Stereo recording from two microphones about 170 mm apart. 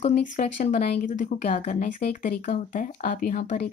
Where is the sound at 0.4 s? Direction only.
45° left (ahead or behind).